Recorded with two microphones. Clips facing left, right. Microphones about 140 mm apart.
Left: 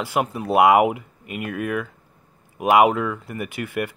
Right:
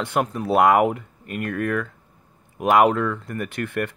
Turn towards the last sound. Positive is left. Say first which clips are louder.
# right 1 dB
turn(degrees=5)  # may be behind; listen again after turning